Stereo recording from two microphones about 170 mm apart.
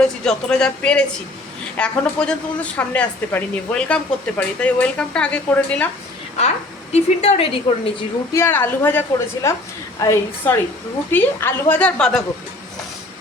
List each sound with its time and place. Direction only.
0.0 s a woman's voice: 5° left (ahead or behind)
6.9 s a woman's voice: 40° left (ahead or behind)
8.3 s a woman's voice: 15° left (ahead or behind)